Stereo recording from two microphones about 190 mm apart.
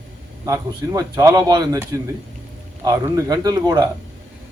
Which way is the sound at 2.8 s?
20° right (ahead or behind).